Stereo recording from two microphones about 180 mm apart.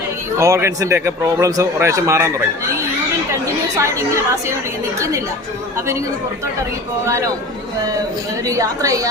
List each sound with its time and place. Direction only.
0.3 s speech: 15° right (ahead or behind)
3.8 s speech: 15° right (ahead or behind)
8.4 s a woman's voice: 20° right (ahead or behind)